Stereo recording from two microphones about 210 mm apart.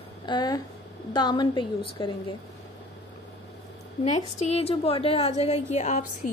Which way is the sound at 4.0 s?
30° left (ahead or behind).